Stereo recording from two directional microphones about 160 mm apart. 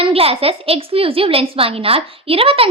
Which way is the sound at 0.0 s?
35° right (ahead or behind).